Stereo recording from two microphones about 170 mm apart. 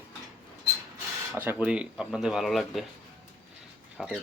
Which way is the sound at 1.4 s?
10° right (ahead or behind).